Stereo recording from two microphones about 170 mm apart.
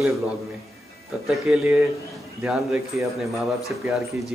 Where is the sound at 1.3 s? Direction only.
5° right (ahead or behind).